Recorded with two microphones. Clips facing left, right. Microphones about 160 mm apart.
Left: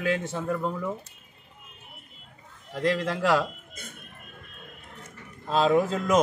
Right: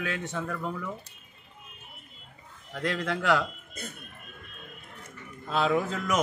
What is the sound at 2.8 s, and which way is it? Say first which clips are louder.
Speech: left 4 dB; 30° left (ahead or behind).